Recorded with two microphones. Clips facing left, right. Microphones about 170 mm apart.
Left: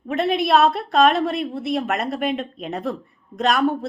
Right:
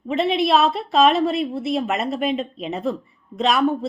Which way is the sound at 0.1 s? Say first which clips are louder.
Even; centre (ahead or behind).